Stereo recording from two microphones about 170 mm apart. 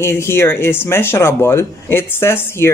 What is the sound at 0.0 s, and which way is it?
Speech, 15° left (ahead or behind).